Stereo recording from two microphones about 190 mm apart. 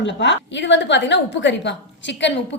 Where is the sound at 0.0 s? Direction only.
65° left (ahead or behind).